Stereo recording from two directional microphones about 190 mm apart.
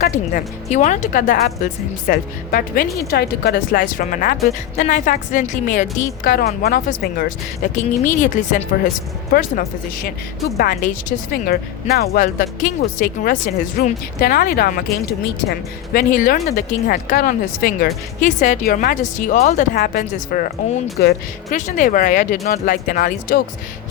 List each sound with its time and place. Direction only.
0.0 s a woman's voice: 45° left (ahead or behind)
9.3 s a woman's voice: 50° left (ahead or behind)
12.1 s a woman's voice: 45° left (ahead or behind)